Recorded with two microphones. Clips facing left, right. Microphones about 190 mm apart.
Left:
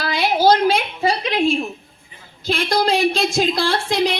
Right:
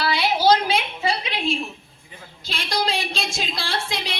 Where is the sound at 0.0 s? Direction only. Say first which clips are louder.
Left 3 dB; 50° left (ahead or behind).